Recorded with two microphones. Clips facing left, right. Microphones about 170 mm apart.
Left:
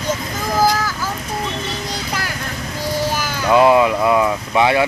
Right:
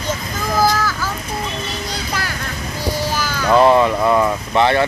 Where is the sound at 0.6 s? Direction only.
15° left (ahead or behind).